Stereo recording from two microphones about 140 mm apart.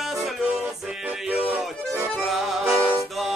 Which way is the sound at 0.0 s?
Centre (ahead or behind).